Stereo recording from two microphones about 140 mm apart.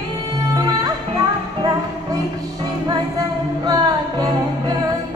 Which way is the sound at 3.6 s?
25° right (ahead or behind).